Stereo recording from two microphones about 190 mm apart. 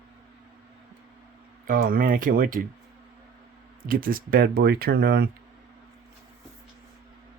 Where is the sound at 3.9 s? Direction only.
50° right (ahead or behind).